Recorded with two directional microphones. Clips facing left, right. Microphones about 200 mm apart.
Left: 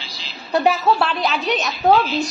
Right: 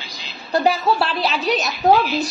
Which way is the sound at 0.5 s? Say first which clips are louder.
Left 1 dB; centre (ahead or behind).